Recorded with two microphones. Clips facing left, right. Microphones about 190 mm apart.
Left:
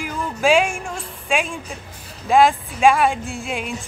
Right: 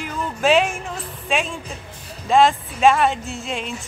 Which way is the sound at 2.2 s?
Centre (ahead or behind).